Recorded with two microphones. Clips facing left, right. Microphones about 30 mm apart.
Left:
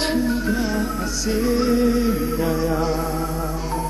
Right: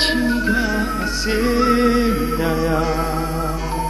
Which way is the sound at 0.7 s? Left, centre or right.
Right.